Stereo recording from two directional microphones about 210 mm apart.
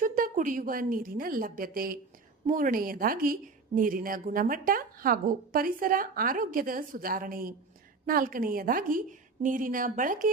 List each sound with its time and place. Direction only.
0.0 s a woman's voice: 40° right (ahead or behind)